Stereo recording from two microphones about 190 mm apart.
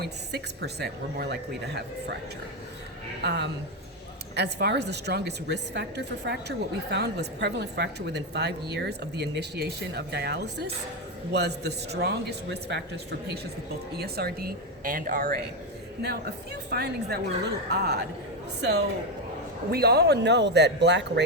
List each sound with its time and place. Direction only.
0.0 s a woman's voice: 60° right (ahead or behind)
3.2 s a woman's voice: 65° right (ahead or behind); by 15.4 s 50° right (ahead or behind)
16.0 s a woman's voice: 60° right (ahead or behind)